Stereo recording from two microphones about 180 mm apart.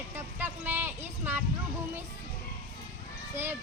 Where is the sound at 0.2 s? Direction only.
10° right (ahead or behind).